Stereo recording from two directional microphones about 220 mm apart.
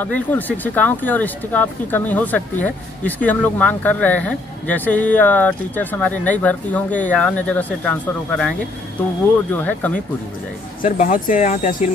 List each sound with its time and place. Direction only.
0.0 s speech: 5° left (ahead or behind)
10.8 s speech: 40° left (ahead or behind)